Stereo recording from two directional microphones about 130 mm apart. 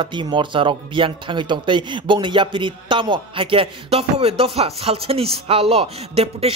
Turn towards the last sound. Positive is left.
turn(degrees=-50)  # may be behind; listen again after turning